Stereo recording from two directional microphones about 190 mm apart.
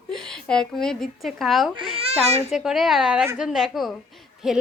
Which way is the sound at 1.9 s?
30° right (ahead or behind).